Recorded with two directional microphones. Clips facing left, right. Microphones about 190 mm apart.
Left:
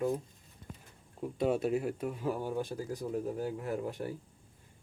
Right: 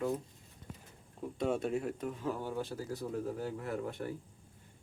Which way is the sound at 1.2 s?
5° left (ahead or behind).